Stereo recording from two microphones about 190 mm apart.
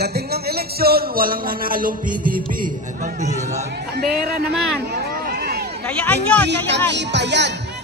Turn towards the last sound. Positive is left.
turn(degrees=-65)  # may be behind; listen again after turning